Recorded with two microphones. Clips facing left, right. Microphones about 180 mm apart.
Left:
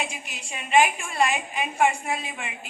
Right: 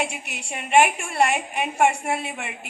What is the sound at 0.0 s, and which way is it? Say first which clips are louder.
A woman's voice: right 4 dB; 70° right (ahead or behind).